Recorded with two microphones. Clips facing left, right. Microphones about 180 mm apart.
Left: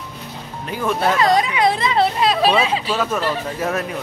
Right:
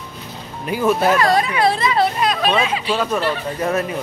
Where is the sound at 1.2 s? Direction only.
20° left (ahead or behind).